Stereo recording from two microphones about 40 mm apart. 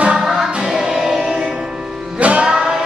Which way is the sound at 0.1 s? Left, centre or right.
Centre.